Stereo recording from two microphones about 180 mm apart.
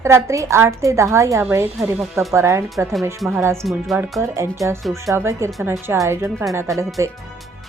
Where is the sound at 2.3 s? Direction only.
15° right (ahead or behind).